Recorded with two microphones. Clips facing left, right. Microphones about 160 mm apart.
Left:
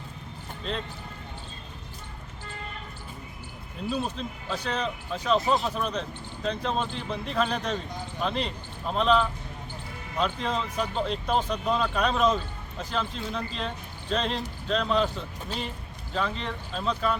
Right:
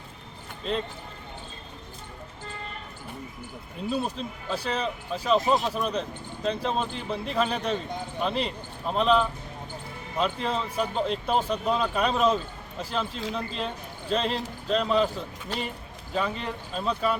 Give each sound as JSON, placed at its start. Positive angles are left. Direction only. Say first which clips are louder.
{"t": 3.9, "sound": "speech", "louder": "right 2 dB", "side_deg": -5}
{"t": 16.1, "sound": "speech", "louder": "right 1 dB", "side_deg": -5}